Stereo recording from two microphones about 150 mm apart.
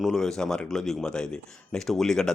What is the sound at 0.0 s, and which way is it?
Speech, centre (ahead or behind).